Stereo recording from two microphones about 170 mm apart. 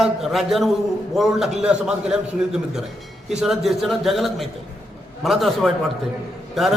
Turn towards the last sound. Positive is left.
turn(degrees=0)  # may be behind; listen again after turning